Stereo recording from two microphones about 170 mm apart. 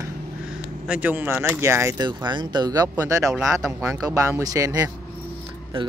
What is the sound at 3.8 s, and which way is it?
Speech, 20° right (ahead or behind).